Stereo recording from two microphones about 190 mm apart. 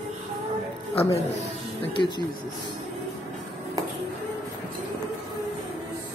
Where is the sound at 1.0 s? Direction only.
30° left (ahead or behind).